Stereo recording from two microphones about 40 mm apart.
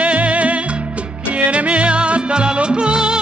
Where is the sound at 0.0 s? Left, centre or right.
Right.